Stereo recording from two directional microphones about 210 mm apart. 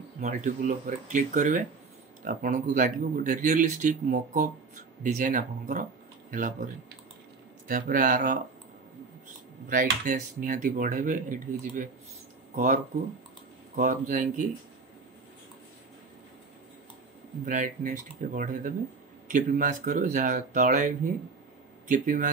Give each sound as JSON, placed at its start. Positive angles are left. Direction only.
{"t": 0.2, "sound": "speech", "side_deg": -35}
{"t": 9.7, "sound": "speech", "side_deg": -40}
{"t": 17.5, "sound": "speech", "side_deg": -40}